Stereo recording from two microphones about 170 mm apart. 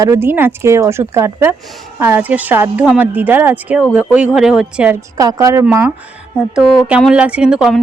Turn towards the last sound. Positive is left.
turn(degrees=-5)  # may be behind; listen again after turning